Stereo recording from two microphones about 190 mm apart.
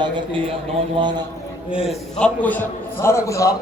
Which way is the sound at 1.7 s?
Centre (ahead or behind).